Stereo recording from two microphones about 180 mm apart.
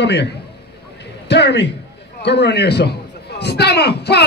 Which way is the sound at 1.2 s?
70° left (ahead or behind).